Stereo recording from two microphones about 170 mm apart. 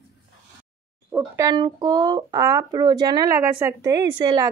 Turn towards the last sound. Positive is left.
turn(degrees=-25)  # may be behind; listen again after turning